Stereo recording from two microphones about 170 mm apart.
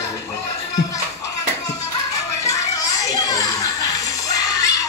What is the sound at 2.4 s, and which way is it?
Children playing, 20° left (ahead or behind).